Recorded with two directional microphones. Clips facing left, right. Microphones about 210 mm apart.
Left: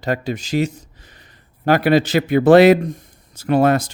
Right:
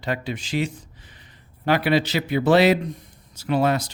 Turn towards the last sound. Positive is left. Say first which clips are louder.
# left 6 dB
turn(degrees=50)  # may be behind; listen again after turning